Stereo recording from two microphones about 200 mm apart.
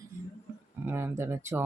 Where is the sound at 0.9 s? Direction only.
10° right (ahead or behind).